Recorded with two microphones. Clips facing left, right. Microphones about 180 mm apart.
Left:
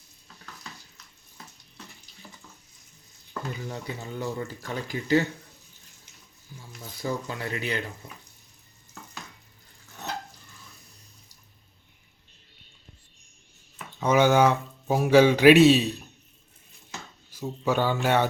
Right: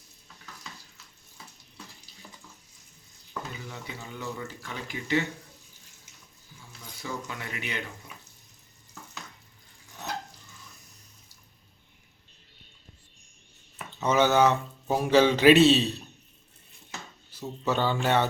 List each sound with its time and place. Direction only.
3.7 s speech: 40° left (ahead or behind)
7.0 s speech: 35° left (ahead or behind)
14.0 s speech: 10° left (ahead or behind)
17.3 s speech: 10° left (ahead or behind)